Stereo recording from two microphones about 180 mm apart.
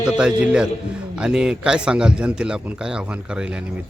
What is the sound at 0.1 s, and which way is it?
A man's voice, 5° right (ahead or behind).